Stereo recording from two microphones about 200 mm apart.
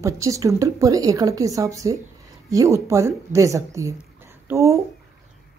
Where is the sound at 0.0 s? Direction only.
15° right (ahead or behind).